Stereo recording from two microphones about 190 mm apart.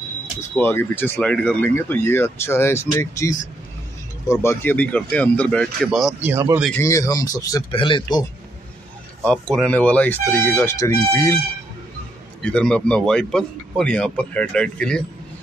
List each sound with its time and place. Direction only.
0.6 s speech: 10° left (ahead or behind)
6.3 s speech: 15° right (ahead or behind)
6.8 s speech: 15° left (ahead or behind)
9.2 s speech: 5° left (ahead or behind)
12.4 s a man's voice: 5° left (ahead or behind)